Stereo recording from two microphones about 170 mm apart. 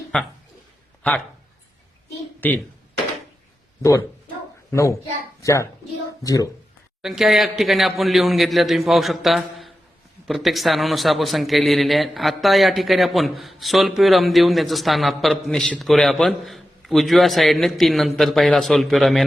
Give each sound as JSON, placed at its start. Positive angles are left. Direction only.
{"t": 0.1, "sound": "speech", "side_deg": 5}
{"t": 2.4, "sound": "speech", "side_deg": 10}
{"t": 4.7, "sound": "a child's voice", "side_deg": 15}
{"t": 7.0, "sound": "a man's voice", "side_deg": 0}